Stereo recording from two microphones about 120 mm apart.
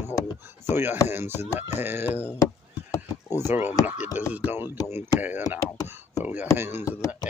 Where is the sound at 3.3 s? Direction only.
20° right (ahead or behind).